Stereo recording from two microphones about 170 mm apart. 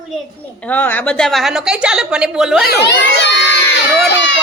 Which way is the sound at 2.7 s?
90° left.